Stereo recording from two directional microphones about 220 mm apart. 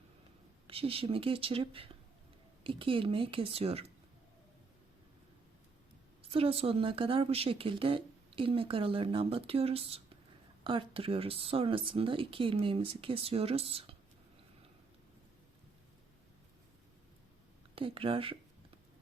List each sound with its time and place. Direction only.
0.7 s speech: 25° right (ahead or behind)
6.3 s speech: 25° right (ahead or behind)
17.7 s speech: 25° right (ahead or behind)